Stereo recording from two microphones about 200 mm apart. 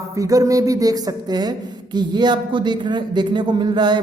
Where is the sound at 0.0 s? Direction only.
15° right (ahead or behind).